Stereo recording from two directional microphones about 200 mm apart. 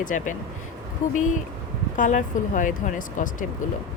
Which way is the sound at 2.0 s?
40° left (ahead or behind).